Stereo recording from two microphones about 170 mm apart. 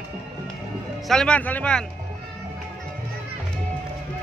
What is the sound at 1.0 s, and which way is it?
Speech, 5° left (ahead or behind).